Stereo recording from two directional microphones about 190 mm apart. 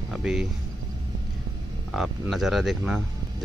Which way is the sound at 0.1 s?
5° right (ahead or behind).